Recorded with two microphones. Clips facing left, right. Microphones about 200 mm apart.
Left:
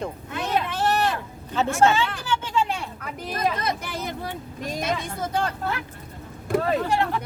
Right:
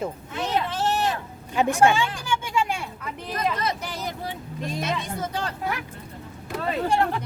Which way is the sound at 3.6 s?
50° left (ahead or behind).